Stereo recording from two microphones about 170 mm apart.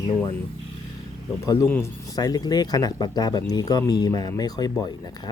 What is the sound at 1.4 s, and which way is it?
Speech, 20° left (ahead or behind).